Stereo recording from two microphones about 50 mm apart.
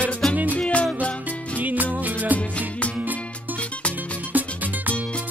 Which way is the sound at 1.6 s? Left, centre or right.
Right.